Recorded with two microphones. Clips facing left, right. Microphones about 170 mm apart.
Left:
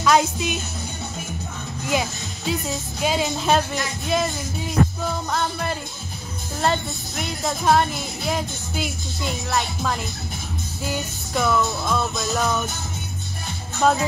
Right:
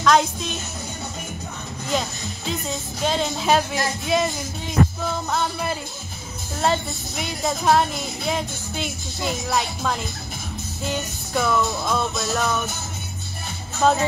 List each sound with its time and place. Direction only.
0.0 s speech: 5° left (ahead or behind)
1.9 s music: 10° left (ahead or behind)
3.0 s speech: 5° left (ahead or behind)
13.8 s speech: 5° left (ahead or behind)